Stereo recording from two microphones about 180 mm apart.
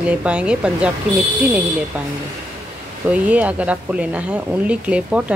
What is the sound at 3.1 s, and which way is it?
Speech, 5° right (ahead or behind).